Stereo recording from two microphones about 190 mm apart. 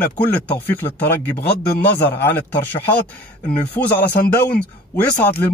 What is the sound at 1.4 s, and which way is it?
Speech, 55° left (ahead or behind).